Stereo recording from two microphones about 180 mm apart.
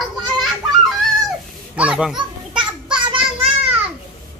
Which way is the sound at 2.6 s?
25° right (ahead or behind).